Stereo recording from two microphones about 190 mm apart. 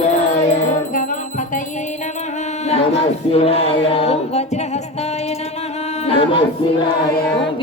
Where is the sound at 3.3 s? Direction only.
30° left (ahead or behind).